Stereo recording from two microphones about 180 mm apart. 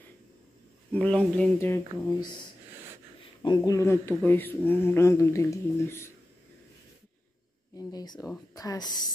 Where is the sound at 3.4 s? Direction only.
20° left (ahead or behind).